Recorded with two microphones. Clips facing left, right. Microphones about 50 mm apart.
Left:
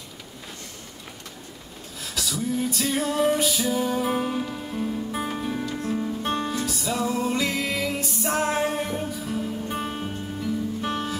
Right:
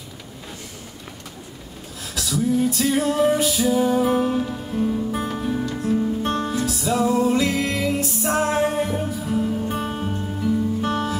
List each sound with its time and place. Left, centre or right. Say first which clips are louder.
2.1 s music: right 6 dB; centre